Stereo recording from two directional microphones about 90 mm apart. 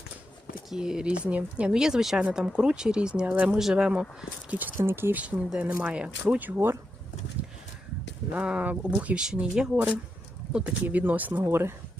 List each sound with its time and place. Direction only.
0.7 s speech: 5° right (ahead or behind)
4.2 s speech: 15° right (ahead or behind)
5.2 s speech: 15° right (ahead or behind)
8.3 s speech: 15° right (ahead or behind)